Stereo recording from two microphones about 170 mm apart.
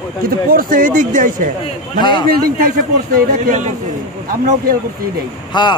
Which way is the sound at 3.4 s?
45° right (ahead or behind).